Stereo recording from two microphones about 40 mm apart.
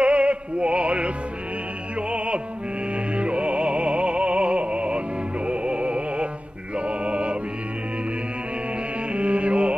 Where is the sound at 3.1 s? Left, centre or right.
Right.